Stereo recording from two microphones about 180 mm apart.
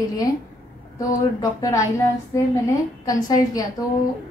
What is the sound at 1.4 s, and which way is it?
Speech, 20° left (ahead or behind).